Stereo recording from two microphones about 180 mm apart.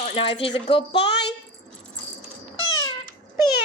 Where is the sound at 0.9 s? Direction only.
70° left (ahead or behind).